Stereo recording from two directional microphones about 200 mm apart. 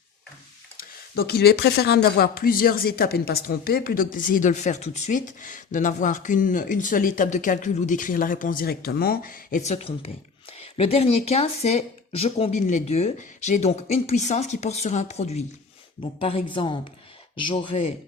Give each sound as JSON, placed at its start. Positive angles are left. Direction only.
{"t": 0.8, "sound": "speech", "side_deg": 50}